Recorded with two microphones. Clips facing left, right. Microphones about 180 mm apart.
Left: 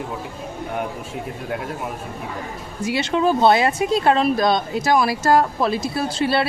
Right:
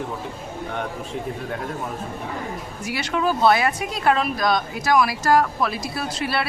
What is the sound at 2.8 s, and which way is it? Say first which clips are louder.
Speech: left 4 dB; 25° left (ahead or behind).